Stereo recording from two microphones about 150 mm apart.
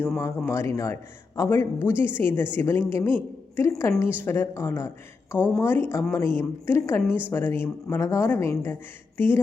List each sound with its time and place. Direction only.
0.2 s a woman's voice: 20° left (ahead or behind)